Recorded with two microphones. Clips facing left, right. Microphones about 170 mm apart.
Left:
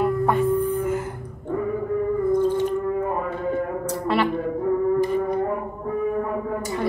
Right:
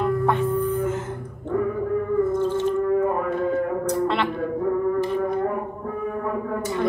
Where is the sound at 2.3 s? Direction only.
15° left (ahead or behind).